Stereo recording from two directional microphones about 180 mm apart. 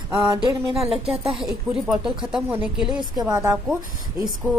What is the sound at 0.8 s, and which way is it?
Speech, 35° right (ahead or behind).